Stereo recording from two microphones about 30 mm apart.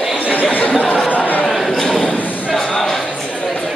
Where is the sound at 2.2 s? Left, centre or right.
Left.